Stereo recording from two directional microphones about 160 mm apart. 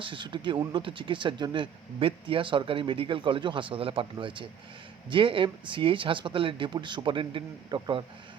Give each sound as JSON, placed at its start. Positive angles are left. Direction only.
{"t": 0.0, "sound": "speech", "side_deg": -30}